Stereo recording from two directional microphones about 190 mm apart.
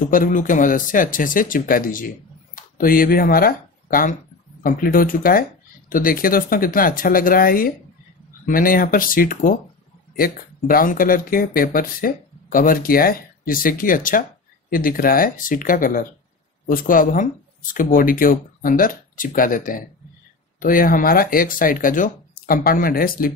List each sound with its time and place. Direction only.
0.1 s speech: 45° left (ahead or behind)